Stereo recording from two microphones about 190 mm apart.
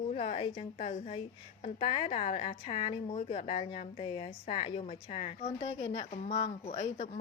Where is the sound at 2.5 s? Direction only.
45° left (ahead or behind).